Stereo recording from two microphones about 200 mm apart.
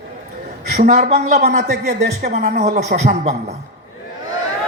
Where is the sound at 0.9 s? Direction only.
35° right (ahead or behind).